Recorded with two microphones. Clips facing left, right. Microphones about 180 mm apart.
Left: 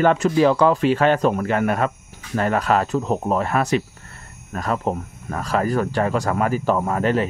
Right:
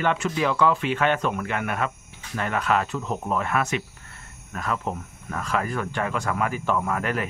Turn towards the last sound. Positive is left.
turn(degrees=30)  # may be behind; listen again after turning